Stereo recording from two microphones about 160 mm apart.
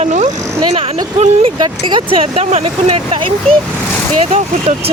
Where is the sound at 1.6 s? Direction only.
30° right (ahead or behind).